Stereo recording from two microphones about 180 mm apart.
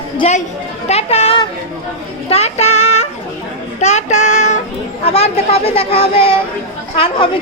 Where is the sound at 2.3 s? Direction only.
35° left (ahead or behind).